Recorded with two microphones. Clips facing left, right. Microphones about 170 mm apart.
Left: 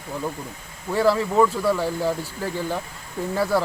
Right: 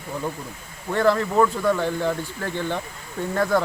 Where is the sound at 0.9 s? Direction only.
5° left (ahead or behind).